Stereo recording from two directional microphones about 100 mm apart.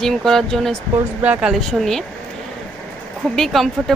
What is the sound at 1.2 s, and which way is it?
Speech, 10° right (ahead or behind).